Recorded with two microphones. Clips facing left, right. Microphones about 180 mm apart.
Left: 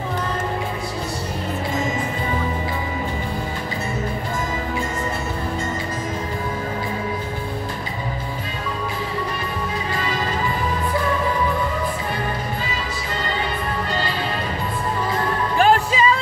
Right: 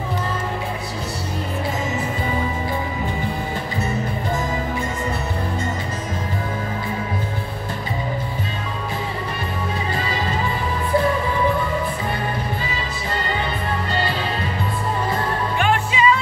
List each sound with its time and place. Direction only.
15.5 s music: 35° left (ahead or behind)